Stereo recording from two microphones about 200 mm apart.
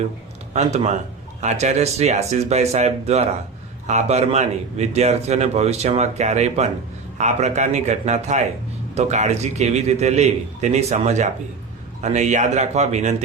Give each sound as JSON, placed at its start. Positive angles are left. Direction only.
{"t": 0.5, "sound": "a man's voice", "side_deg": -30}